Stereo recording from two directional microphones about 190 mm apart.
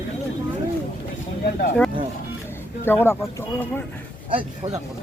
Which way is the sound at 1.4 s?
50° left (ahead or behind).